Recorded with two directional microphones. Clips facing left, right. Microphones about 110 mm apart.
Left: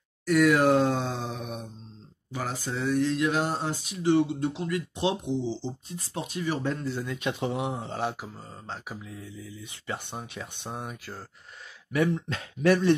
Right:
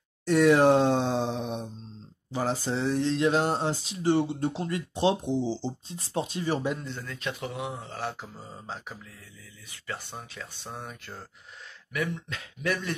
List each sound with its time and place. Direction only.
0.2 s a sound: 30° right (ahead or behind)
2.3 s speech: 30° right (ahead or behind)
6.8 s speech: 5° left (ahead or behind)
7.1 s speech: 20° left (ahead or behind)
8.4 s speech: 5° right (ahead or behind)
8.8 s speech: 10° left (ahead or behind)
11.9 s speech: 30° left (ahead or behind)